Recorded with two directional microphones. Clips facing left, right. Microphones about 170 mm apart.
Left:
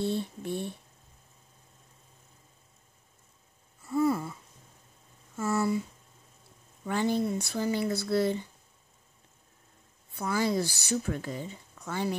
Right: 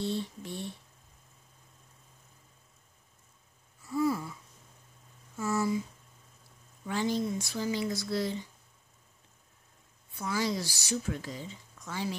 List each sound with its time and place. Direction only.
0.0 s speech: 55° left (ahead or behind)
3.8 s a sound: 55° left (ahead or behind)
5.4 s speech: 60° left (ahead or behind)
6.9 s speech: 55° left (ahead or behind)
10.1 s speech: 55° left (ahead or behind)